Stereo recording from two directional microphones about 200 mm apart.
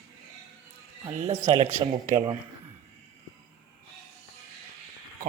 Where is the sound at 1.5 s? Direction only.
30° right (ahead or behind).